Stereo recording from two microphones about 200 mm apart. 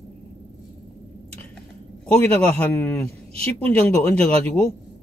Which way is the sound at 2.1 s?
5° left (ahead or behind).